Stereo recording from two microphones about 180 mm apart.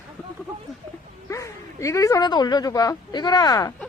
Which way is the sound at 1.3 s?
15° left (ahead or behind).